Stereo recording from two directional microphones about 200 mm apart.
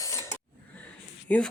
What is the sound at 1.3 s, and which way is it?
Speech, 5° left (ahead or behind).